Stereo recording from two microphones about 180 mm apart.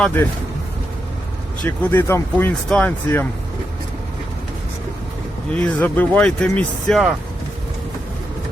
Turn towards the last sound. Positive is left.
turn(degrees=0)  # may be behind; listen again after turning